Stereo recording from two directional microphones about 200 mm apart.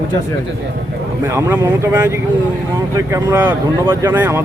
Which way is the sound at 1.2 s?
10° right (ahead or behind).